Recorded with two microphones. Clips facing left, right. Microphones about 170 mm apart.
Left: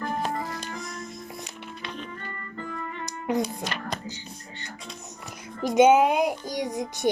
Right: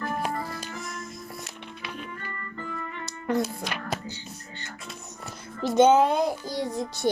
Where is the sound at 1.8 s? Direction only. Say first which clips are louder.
Left 1 dB; 10° right (ahead or behind).